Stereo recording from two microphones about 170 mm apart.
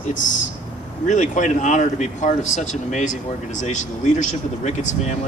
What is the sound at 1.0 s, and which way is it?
Speech, 45° left (ahead or behind).